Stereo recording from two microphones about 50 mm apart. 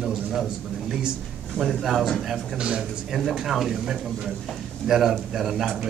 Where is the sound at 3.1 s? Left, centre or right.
Centre.